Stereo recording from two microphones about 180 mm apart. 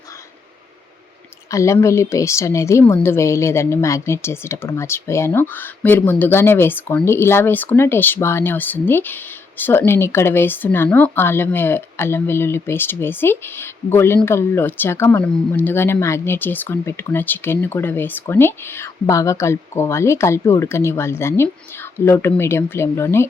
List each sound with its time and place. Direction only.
1.5 s speech: 15° left (ahead or behind)